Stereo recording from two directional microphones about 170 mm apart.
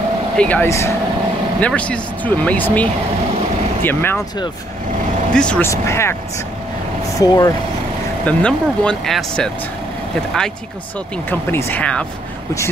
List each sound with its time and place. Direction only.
0.4 s speech: 10° left (ahead or behind)
5.3 s speech: 5° left (ahead or behind)
7.2 s speech: 20° left (ahead or behind)
8.3 s speech: 5° left (ahead or behind)
11.2 s speech: 15° left (ahead or behind)